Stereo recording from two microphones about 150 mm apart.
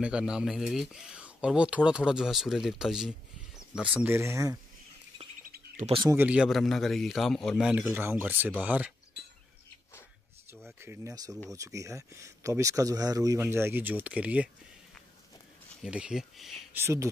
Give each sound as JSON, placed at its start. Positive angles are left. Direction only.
{"t": 0.0, "sound": "speech", "side_deg": -5}
{"t": 5.4, "sound": "bird", "side_deg": -65}
{"t": 6.0, "sound": "speech", "side_deg": -10}
{"t": 10.8, "sound": "speech", "side_deg": -20}
{"t": 15.8, "sound": "speech", "side_deg": -5}
{"t": 16.7, "sound": "speech", "side_deg": -20}